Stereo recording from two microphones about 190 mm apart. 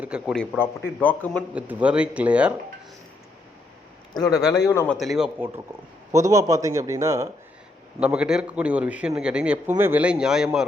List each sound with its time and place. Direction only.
0.0 s a man's voice: 5° right (ahead or behind)
0.5 s speech: 10° left (ahead or behind)
1.5 s a man's voice: 5° right (ahead or behind)
4.1 s speech: 20° left (ahead or behind)
4.9 s a man's voice: centre (ahead or behind)
6.1 s a man's voice: 15° right (ahead or behind)